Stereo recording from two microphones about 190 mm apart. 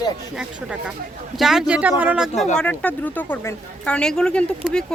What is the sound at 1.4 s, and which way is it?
Speech, centre (ahead or behind).